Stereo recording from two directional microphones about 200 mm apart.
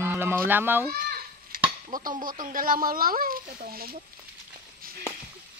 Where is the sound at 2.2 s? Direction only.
45° right (ahead or behind).